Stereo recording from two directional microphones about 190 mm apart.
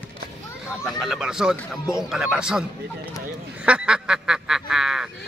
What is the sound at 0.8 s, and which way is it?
Speech, centre (ahead or behind).